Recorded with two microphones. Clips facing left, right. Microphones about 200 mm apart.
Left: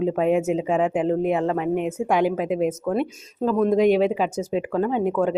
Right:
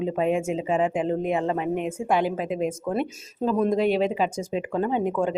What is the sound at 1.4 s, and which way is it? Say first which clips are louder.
Speech: left 2 dB; 15° right (ahead or behind).